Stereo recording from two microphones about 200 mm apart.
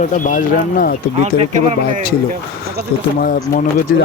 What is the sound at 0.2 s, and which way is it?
Speech, 40° left (ahead or behind).